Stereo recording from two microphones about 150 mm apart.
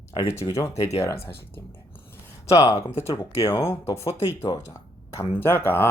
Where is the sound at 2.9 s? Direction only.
40° left (ahead or behind).